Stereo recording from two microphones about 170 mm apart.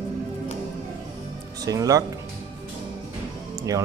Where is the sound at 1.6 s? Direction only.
20° right (ahead or behind).